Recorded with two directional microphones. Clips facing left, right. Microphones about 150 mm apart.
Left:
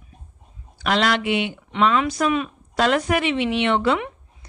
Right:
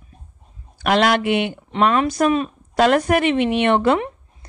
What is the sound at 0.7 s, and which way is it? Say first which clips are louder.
Speech: right 4 dB; 50° right (ahead or behind).